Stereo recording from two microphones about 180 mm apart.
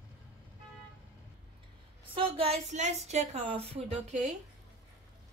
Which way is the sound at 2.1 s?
30° right (ahead or behind).